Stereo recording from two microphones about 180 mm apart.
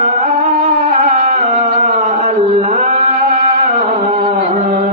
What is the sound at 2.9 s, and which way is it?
Music, 50° right (ahead or behind).